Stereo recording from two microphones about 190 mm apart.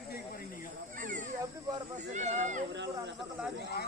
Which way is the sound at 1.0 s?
45° right (ahead or behind).